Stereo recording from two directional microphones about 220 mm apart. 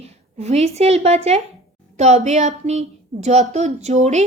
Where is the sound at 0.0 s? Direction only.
30° right (ahead or behind).